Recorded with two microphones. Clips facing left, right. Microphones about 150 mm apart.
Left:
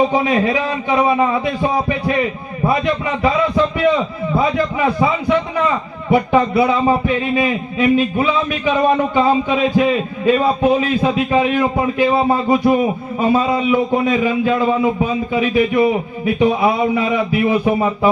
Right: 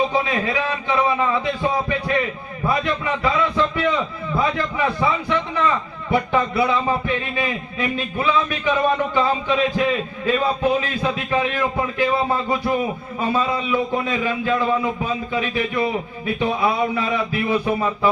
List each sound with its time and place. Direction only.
0.1 s a man's voice: 20° left (ahead or behind)
2.6 s a man's voice: 20° left (ahead or behind)